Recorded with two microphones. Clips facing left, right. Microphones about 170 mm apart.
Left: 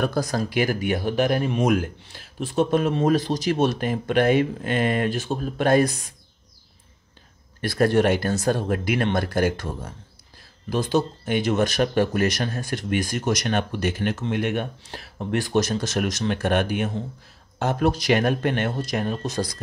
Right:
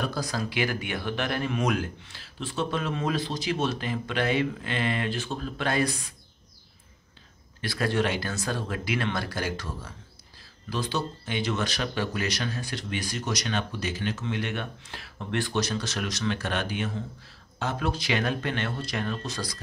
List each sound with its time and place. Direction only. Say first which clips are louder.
0.0 s speech: left 6 dB; 50° left (ahead or behind)
7.6 s speech: left 8 dB; 50° left (ahead or behind)